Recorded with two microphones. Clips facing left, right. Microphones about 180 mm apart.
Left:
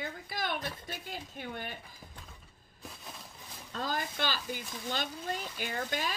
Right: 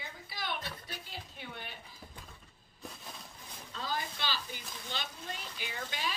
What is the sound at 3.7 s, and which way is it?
A woman's voice, 50° left (ahead or behind).